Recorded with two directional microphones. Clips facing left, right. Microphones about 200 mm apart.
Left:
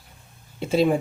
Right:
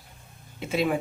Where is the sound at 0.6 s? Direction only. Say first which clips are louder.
Left 6 dB; 30° left (ahead or behind).